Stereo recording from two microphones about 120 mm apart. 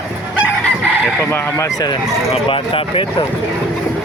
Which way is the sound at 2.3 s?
50° left (ahead or behind).